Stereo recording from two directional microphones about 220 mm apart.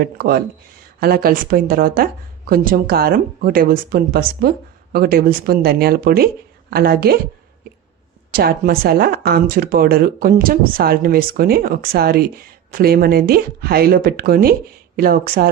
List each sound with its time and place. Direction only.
0.0 s speech: 45° right (ahead or behind)
8.3 s speech: 45° right (ahead or behind)